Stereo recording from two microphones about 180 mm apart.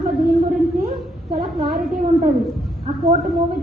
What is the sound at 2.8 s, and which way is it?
Speech, 35° right (ahead or behind).